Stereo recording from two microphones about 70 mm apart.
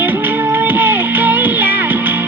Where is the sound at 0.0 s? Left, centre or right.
Right.